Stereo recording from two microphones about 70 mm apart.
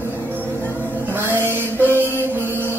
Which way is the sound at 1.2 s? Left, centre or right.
Right.